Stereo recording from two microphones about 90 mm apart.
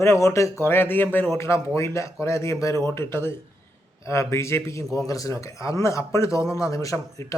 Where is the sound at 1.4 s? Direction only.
30° left (ahead or behind).